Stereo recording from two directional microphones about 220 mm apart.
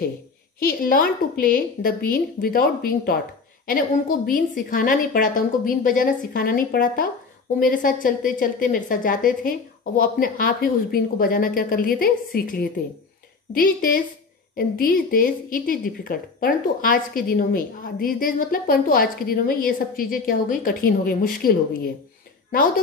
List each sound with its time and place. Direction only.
0.6 s a woman's voice: 40° left (ahead or behind)
4.3 s a woman's voice: 40° left (ahead or behind)